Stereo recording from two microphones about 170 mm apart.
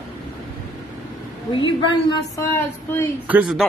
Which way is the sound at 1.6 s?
25° left (ahead or behind).